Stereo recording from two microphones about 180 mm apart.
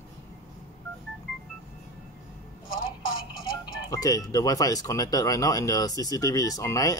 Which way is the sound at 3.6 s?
20° left (ahead or behind).